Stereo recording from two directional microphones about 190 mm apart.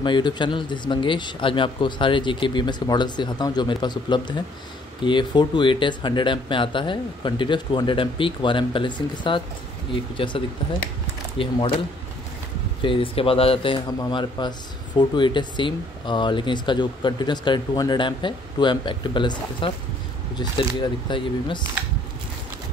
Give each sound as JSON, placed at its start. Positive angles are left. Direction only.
{"t": 0.0, "sound": "speech", "side_deg": 25}
{"t": 12.8, "sound": "speech", "side_deg": 25}